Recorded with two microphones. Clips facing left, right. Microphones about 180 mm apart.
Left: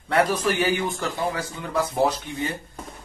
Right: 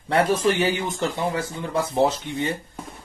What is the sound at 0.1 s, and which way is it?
Speech, 25° right (ahead or behind).